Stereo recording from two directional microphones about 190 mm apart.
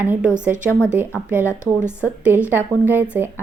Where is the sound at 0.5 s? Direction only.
15° left (ahead or behind).